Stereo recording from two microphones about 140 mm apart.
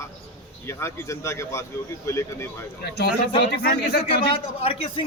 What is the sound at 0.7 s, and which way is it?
Speech, 20° left (ahead or behind).